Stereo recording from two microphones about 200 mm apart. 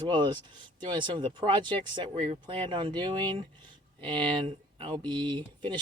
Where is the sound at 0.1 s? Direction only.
20° right (ahead or behind).